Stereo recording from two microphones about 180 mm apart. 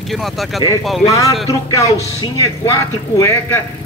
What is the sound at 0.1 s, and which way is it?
Speech, centre (ahead or behind).